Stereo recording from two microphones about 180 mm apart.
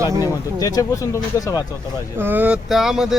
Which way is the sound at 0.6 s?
20° left (ahead or behind).